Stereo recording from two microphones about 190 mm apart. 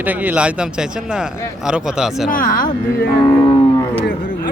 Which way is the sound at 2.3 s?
45° left (ahead or behind).